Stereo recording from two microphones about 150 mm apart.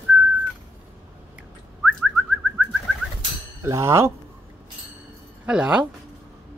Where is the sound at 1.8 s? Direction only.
5° right (ahead or behind).